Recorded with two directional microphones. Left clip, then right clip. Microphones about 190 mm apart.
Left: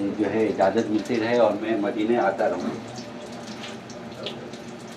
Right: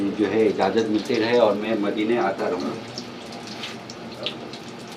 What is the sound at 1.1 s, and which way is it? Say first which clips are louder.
Speech: right 5 dB; 10° left (ahead or behind).